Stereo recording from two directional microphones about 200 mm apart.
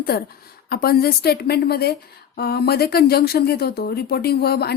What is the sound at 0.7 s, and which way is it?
A woman's voice, 50° left (ahead or behind).